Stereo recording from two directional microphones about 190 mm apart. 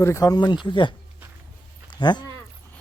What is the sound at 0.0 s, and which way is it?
Speech, 15° left (ahead or behind).